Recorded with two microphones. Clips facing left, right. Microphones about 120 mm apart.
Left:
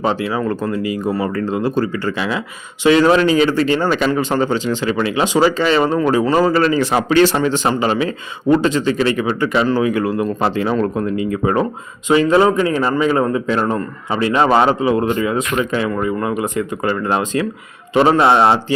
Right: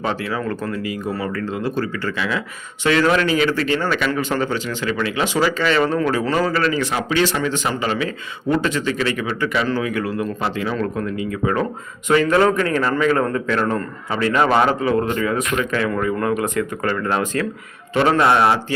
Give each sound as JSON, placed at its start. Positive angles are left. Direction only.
{"t": 0.0, "sound": "a man's voice", "side_deg": 20}
{"t": 6.9, "sound": "a man's voice", "side_deg": 45}
{"t": 16.0, "sound": "a man's voice", "side_deg": 10}